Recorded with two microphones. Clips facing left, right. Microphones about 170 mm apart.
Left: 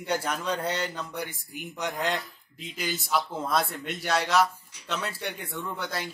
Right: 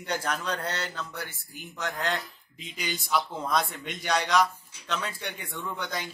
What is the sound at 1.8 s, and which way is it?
A man's voice, centre (ahead or behind).